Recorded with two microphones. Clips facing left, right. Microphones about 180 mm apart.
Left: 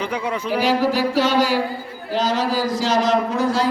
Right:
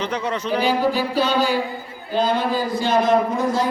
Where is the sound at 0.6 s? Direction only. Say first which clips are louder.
Left 2 dB; 85° left.